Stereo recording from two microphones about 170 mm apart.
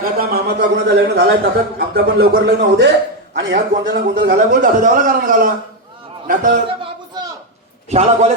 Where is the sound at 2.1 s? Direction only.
80° right.